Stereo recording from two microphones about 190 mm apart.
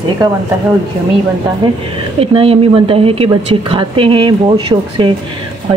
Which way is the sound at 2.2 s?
30° right (ahead or behind).